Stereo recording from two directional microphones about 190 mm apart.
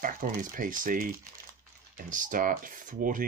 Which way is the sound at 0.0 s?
45° right (ahead or behind).